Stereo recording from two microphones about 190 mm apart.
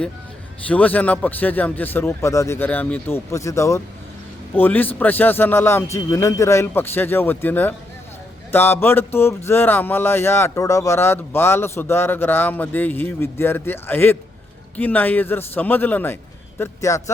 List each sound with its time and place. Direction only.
0.7 s speech: 10° left (ahead or behind)